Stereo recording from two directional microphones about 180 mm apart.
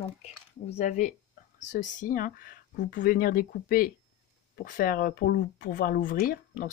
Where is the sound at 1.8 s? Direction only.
50° left (ahead or behind).